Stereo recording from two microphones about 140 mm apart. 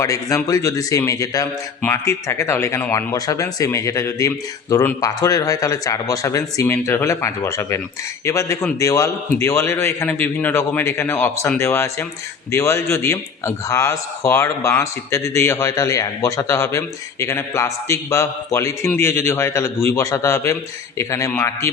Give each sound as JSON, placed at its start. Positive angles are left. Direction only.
{"t": 0.0, "sound": "a man's voice", "side_deg": 25}